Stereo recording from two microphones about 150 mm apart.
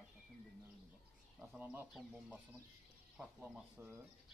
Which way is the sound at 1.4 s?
5° right (ahead or behind).